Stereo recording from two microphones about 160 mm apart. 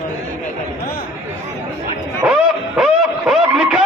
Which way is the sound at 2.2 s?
5° right (ahead or behind).